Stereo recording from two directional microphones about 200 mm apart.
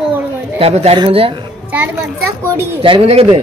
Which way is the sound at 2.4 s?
15° right (ahead or behind).